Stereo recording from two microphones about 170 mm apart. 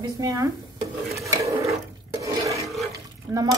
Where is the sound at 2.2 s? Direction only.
20° right (ahead or behind).